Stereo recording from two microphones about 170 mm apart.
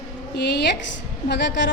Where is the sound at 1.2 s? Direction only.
90° left.